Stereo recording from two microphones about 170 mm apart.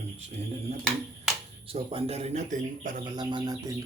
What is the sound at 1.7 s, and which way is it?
Speech, 35° right (ahead or behind).